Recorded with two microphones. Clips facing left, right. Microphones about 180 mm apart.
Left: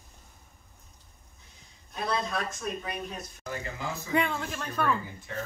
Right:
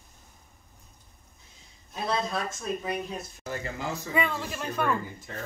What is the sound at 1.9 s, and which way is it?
Speech, 25° right (ahead or behind).